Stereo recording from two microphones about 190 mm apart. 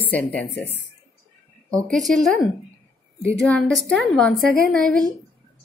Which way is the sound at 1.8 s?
Centre (ahead or behind).